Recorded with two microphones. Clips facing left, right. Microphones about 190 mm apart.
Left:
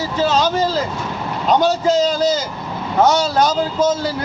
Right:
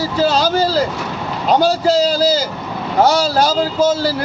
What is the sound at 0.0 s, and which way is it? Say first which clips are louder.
Speech: right 2 dB; 35° right (ahead or behind).